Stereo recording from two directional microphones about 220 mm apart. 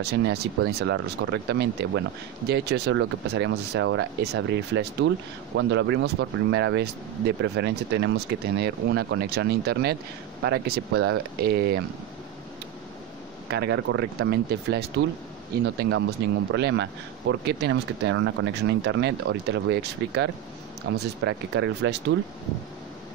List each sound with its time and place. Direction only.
0.0 s speech: 50° right (ahead or behind)
13.5 s speech: 50° right (ahead or behind)